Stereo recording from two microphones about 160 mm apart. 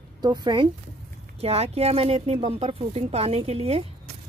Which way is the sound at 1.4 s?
40° right (ahead or behind).